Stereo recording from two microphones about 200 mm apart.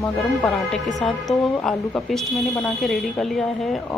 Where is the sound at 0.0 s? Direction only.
5° left (ahead or behind).